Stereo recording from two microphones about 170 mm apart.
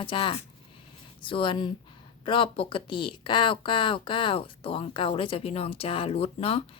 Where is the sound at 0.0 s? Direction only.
30° left (ahead or behind).